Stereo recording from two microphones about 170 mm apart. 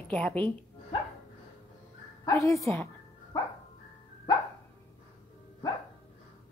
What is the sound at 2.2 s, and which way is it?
Speech, 20° left (ahead or behind).